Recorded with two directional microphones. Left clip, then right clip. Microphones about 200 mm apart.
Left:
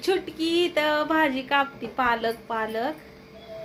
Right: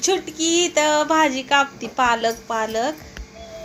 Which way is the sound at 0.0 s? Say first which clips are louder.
Right 4 dB; centre (ahead or behind).